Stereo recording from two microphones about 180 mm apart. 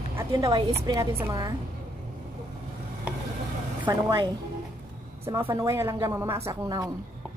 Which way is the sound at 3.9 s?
20° right (ahead or behind).